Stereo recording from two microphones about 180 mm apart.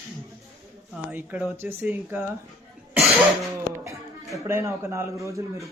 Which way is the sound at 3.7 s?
15° right (ahead or behind).